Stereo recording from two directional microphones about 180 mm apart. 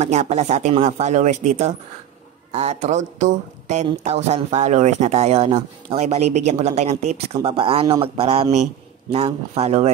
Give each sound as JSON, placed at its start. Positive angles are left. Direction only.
{"t": 0.0, "sound": "speech", "side_deg": -40}